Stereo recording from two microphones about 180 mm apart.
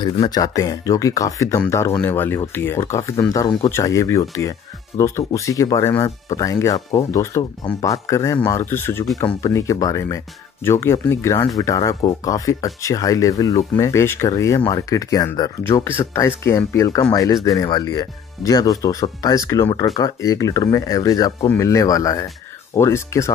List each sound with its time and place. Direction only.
0.0 s speech: 25° left (ahead or behind)